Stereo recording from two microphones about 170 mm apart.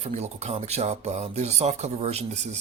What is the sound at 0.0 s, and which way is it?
Speech, 40° right (ahead or behind).